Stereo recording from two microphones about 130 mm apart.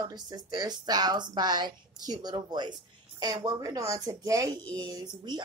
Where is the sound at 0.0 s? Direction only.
30° right (ahead or behind).